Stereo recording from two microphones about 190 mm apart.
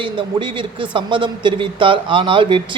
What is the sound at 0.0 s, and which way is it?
Speech, 25° right (ahead or behind).